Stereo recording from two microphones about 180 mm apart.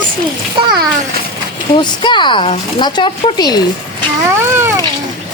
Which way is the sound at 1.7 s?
25° left (ahead or behind).